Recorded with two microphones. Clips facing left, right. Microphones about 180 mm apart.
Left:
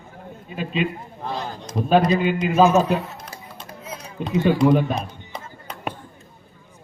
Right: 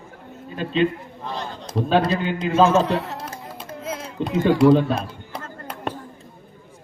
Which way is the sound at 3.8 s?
90° right.